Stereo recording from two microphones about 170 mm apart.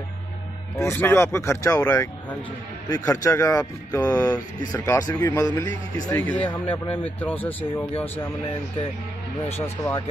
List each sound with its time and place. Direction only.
0.7 s speech: 15° left (ahead or behind)
6.0 s speech: 10° left (ahead or behind)
9.4 s speech: 35° left (ahead or behind)